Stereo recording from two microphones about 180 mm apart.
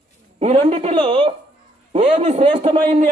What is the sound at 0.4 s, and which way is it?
A man's voice, 35° right (ahead or behind).